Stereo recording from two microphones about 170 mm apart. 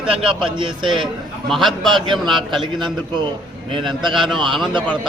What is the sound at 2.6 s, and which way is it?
Speech, 30° right (ahead or behind).